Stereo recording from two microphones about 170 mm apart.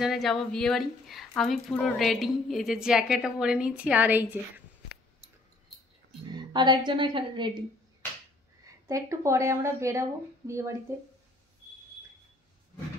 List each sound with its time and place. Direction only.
0.0 s a woman's voice: centre (ahead or behind)
6.3 s a woman's voice: 25° right (ahead or behind)
8.6 s a woman's voice: 20° right (ahead or behind)